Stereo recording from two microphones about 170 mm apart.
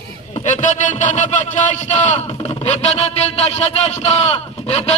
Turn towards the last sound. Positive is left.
turn(degrees=40)  # may be behind; listen again after turning